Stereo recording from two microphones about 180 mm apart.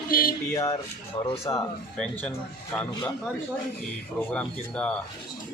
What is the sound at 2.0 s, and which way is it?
Speech, 5° left (ahead or behind).